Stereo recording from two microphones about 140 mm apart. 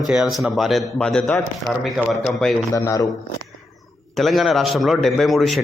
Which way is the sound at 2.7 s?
20° left (ahead or behind).